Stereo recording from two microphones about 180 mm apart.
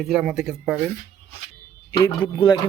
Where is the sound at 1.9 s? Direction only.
20° left (ahead or behind).